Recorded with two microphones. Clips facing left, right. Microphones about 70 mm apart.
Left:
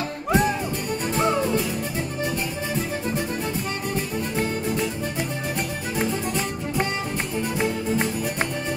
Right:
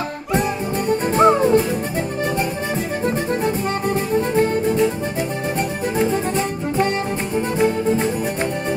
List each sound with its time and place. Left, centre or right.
1.0 s music: right
4.4 s music: right